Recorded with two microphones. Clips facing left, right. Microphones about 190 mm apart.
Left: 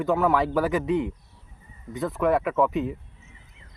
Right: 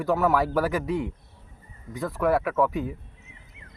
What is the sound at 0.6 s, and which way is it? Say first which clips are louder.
Speech: left 2 dB; 5° right (ahead or behind).